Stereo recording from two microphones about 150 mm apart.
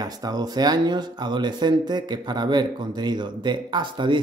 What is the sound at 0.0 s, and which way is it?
Speech, 25° right (ahead or behind).